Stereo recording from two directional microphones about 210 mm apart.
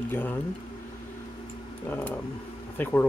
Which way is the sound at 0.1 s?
10° left (ahead or behind).